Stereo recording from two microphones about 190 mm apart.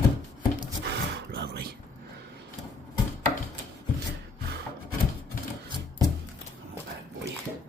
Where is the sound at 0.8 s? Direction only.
60° right (ahead or behind).